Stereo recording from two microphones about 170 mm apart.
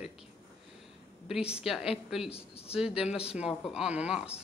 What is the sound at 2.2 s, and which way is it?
Speech, 35° left (ahead or behind).